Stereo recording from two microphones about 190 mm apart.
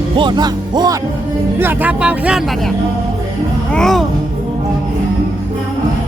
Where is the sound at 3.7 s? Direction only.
Centre (ahead or behind).